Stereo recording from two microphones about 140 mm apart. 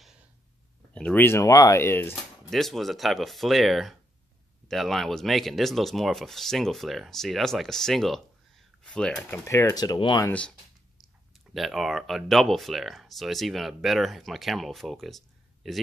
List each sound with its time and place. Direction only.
0.9 s speech: 10° left (ahead or behind)
2.5 s speech: centre (ahead or behind); by 10.2 s 35° left (ahead or behind)
11.3 s speech: centre (ahead or behind)